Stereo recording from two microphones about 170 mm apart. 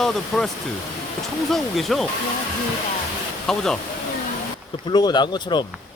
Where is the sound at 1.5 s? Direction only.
Centre (ahead or behind).